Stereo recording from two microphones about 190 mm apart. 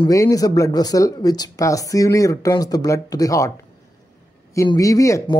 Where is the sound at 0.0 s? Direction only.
20° left (ahead or behind).